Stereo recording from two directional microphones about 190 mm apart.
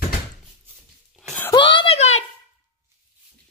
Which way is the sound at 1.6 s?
25° left (ahead or behind).